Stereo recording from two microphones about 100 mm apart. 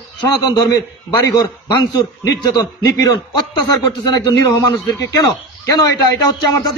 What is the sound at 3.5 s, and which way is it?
Speech, 45° left (ahead or behind).